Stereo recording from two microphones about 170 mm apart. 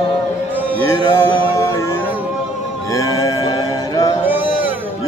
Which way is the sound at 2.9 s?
20° left (ahead or behind).